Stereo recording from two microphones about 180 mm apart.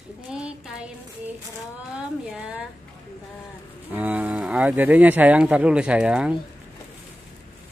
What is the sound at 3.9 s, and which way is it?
Cattle, 10° right (ahead or behind).